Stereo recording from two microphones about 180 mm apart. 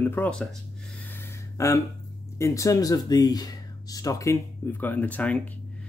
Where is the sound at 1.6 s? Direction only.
15° left (ahead or behind).